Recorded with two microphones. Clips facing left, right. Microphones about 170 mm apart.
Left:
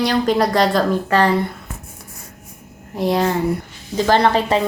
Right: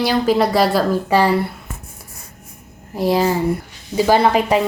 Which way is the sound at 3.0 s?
5° right (ahead or behind).